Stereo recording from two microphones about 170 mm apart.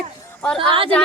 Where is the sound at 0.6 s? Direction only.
30° right (ahead or behind).